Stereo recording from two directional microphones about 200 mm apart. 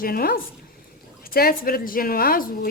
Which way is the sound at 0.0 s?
45° left (ahead or behind).